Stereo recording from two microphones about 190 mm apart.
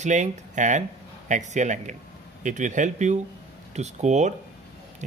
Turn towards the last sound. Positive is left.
turn(degrees=-40)  # may be behind; listen again after turning